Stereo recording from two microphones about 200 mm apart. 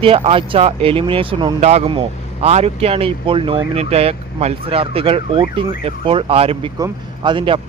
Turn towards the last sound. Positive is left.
turn(degrees=-25)  # may be behind; listen again after turning